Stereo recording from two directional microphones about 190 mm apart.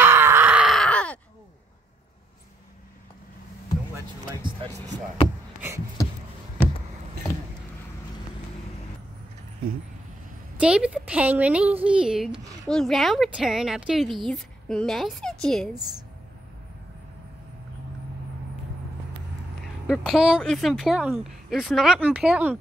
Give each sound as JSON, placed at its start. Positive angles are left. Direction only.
{"t": 0.0, "sound": "groan", "side_deg": -10}
{"t": 4.4, "sound": "vehicle", "side_deg": -20}
{"t": 6.0, "sound": "a sound", "side_deg": 15}
{"t": 10.6, "sound": "a woman's voice", "side_deg": -5}
{"t": 19.9, "sound": "a woman's voice", "side_deg": 0}